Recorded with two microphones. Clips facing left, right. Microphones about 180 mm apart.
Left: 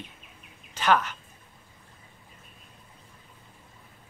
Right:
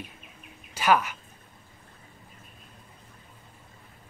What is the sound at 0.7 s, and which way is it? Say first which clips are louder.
Speech: right 1 dB; 10° right (ahead or behind).